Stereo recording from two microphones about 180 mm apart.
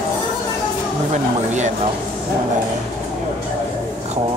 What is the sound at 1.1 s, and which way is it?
Speech, 40° right (ahead or behind).